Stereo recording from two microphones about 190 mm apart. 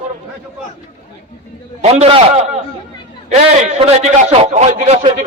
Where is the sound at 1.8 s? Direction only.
30° right (ahead or behind).